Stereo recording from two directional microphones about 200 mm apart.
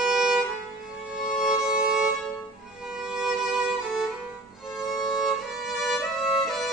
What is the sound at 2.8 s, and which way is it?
Violin, 5° right (ahead or behind).